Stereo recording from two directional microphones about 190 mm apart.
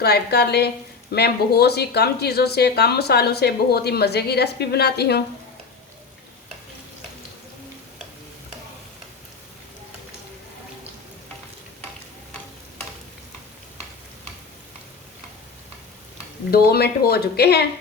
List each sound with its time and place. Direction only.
0.0 s speech: 55° left (ahead or behind)
16.5 s speech: 55° left (ahead or behind)